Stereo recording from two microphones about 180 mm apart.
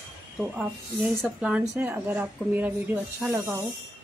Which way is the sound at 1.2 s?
5° right (ahead or behind).